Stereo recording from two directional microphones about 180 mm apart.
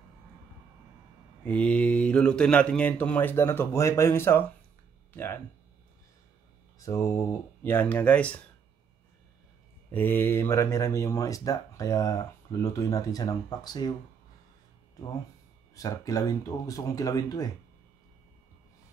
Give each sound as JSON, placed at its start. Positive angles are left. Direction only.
{"t": 1.4, "sound": "speech", "side_deg": 5}
{"t": 6.8, "sound": "speech", "side_deg": 15}
{"t": 9.8, "sound": "speech", "side_deg": 10}
{"t": 15.7, "sound": "speech", "side_deg": 20}